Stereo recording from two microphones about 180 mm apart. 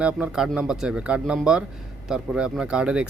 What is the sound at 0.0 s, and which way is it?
Speech, 5° right (ahead or behind).